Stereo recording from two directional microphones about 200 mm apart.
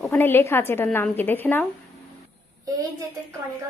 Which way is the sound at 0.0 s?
10° left (ahead or behind).